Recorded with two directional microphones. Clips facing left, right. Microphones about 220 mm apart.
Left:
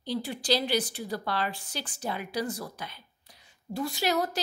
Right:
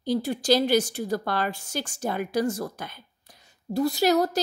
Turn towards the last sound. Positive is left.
turn(degrees=-40)  # may be behind; listen again after turning